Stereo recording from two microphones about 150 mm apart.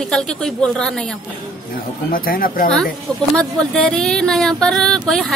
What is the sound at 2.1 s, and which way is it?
Speech, 75° left (ahead or behind).